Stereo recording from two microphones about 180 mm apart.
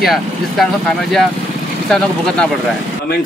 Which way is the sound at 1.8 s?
5° left (ahead or behind).